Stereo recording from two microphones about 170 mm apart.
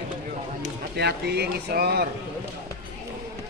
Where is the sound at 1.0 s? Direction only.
75° right (ahead or behind).